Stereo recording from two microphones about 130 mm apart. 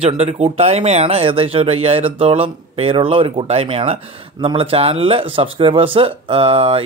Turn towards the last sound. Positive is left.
turn(degrees=-45)  # may be behind; listen again after turning